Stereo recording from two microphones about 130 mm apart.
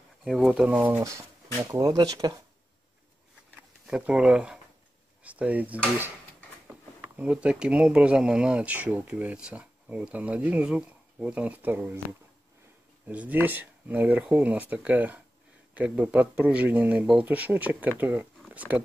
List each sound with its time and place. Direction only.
0.2 s speech: 5° right (ahead or behind); by 2.3 s 30° right (ahead or behind)
3.8 s speech: 5° right (ahead or behind)
7.0 s speech: 10° right (ahead or behind)
13.1 s speech: 10° right (ahead or behind)